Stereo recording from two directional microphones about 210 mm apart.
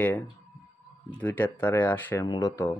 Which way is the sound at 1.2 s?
10° left (ahead or behind).